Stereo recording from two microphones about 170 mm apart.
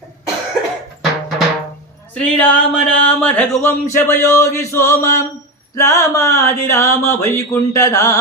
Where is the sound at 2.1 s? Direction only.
5° left (ahead or behind).